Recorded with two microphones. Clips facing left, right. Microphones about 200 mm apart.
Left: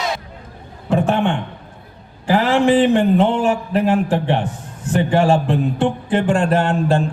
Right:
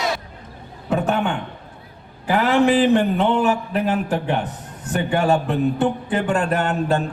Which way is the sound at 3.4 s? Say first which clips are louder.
Left 2 dB; 25° left (ahead or behind).